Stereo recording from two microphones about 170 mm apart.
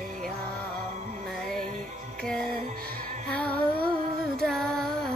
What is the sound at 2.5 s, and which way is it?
Music, 60° right (ahead or behind).